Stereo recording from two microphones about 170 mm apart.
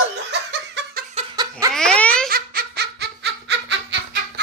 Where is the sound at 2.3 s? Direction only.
60° right (ahead or behind).